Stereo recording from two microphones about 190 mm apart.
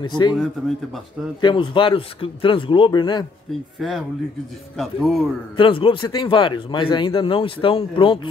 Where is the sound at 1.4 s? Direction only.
25° left (ahead or behind).